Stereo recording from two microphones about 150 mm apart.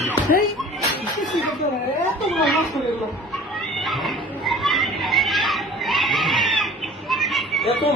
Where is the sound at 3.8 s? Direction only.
Centre (ahead or behind).